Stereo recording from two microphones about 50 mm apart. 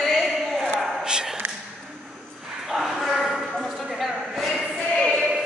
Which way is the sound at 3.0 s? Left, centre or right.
Centre.